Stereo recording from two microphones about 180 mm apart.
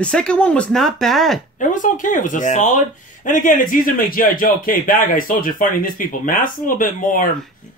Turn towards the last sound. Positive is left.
turn(degrees=50)  # may be behind; listen again after turning